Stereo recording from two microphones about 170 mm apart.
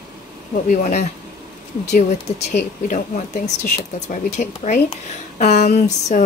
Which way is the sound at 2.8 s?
50° left (ahead or behind).